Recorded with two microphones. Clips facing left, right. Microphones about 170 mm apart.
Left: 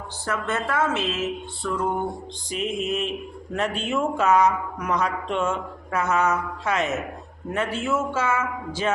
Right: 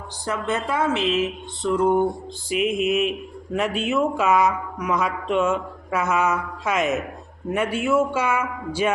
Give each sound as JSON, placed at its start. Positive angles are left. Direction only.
{"t": 0.3, "sound": "a man's voice", "side_deg": -15}
{"t": 1.6, "sound": "music", "side_deg": -20}
{"t": 2.5, "sound": "a man's voice", "side_deg": -5}